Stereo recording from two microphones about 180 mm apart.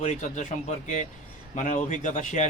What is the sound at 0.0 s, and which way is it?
Speech, 40° left (ahead or behind).